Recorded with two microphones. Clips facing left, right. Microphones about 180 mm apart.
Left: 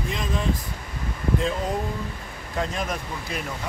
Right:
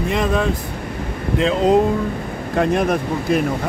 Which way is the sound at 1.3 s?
80° right.